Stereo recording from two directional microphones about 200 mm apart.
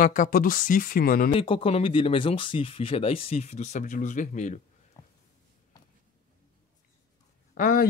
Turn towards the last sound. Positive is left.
turn(degrees=45)  # may be behind; listen again after turning